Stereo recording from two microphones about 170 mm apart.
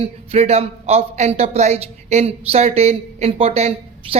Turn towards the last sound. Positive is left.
turn(degrees=-40)  # may be behind; listen again after turning